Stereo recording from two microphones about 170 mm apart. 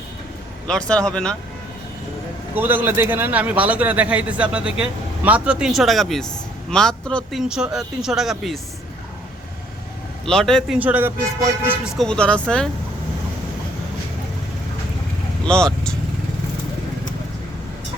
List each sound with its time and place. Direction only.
0.7 s speech: 5° left (ahead or behind)
2.6 s a man's voice: 10° right (ahead or behind)
10.2 s speech: 5° left (ahead or behind)
10.8 s a man's voice: 10° right (ahead or behind)
11.9 s speech: 5° left (ahead or behind)
15.4 s vehicle: 5° left (ahead or behind)